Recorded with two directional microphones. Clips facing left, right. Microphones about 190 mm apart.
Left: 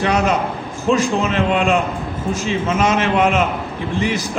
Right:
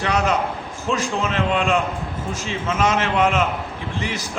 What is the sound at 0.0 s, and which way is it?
A man's voice, 15° left (ahead or behind).